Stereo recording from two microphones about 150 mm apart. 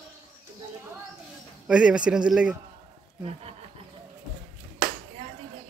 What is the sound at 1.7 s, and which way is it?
Speech, 5° right (ahead or behind).